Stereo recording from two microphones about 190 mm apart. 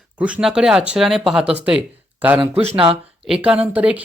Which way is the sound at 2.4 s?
30° right (ahead or behind).